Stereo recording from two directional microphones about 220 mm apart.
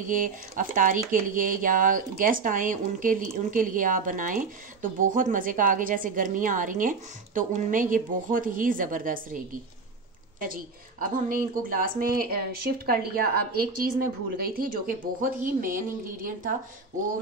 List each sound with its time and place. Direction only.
0.0 s speech: 35° right (ahead or behind)